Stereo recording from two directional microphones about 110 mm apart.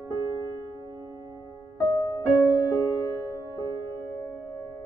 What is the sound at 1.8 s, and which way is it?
Music, 35° left (ahead or behind).